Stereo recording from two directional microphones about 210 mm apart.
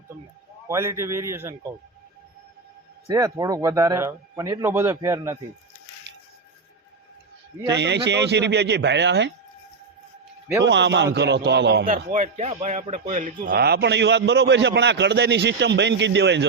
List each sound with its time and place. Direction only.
0.7 s speech: 15° right (ahead or behind)
3.1 s speech: 20° right (ahead or behind)
7.7 s speech: 55° right (ahead or behind)
10.6 s speech: 55° right (ahead or behind)
12.1 s speech: 35° right (ahead or behind); by 16.5 s 55° right (ahead or behind)